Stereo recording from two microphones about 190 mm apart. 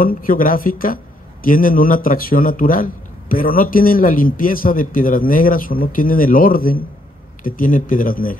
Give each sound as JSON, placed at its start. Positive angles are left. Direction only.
{"t": 0.0, "sound": "a man's voice", "side_deg": 45}